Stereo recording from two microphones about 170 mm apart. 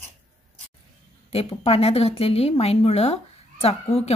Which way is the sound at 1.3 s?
35° left (ahead or behind).